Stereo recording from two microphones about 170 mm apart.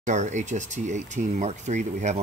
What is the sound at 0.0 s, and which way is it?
Speech, 45° right (ahead or behind).